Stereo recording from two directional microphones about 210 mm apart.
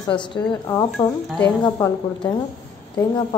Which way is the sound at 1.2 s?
5° left (ahead or behind).